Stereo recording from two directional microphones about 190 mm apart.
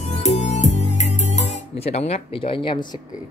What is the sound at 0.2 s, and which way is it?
Music, 40° left (ahead or behind).